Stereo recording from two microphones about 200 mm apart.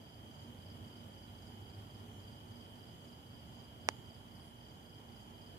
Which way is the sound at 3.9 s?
15° right (ahead or behind).